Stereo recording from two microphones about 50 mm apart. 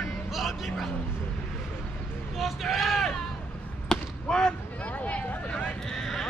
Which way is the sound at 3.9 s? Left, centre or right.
Centre.